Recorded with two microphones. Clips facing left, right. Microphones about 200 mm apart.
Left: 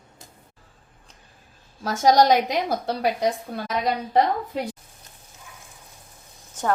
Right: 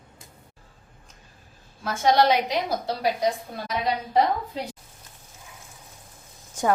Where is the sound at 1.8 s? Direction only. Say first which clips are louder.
Left 3 dB; 40° left (ahead or behind).